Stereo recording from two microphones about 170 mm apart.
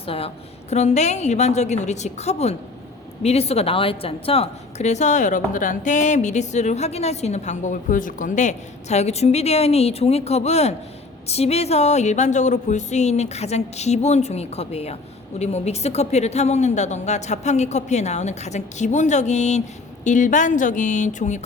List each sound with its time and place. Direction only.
0.0 s a woman's voice: 35° left (ahead or behind)